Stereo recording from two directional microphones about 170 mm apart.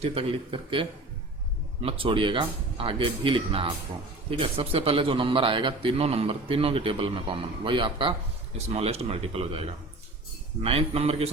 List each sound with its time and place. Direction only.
0.0 s a man's voice: 35° right (ahead or behind)